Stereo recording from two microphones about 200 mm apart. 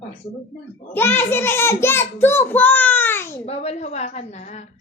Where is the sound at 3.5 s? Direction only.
35° left (ahead or behind).